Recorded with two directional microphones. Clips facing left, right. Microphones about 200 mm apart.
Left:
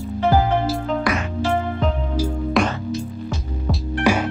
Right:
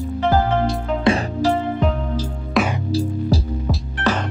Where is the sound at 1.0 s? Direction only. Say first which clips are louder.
Right 4 dB; 35° right (ahead or behind).